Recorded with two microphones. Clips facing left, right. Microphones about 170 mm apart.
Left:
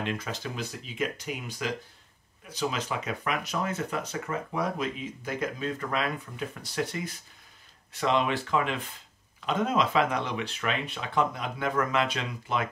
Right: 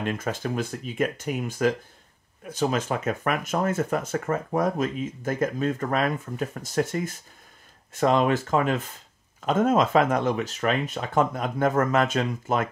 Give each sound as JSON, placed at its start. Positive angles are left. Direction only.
{"t": 0.0, "sound": "speech", "side_deg": -50}